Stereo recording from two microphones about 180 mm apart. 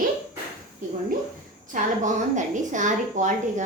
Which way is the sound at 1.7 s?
45° right (ahead or behind).